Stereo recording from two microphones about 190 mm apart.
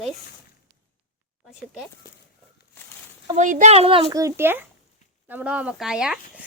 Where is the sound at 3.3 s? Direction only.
40° right (ahead or behind).